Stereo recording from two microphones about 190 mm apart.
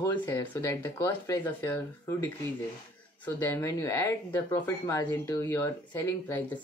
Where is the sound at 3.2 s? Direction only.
15° left (ahead or behind).